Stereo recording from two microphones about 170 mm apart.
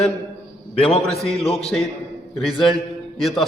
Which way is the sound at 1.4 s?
35° left (ahead or behind).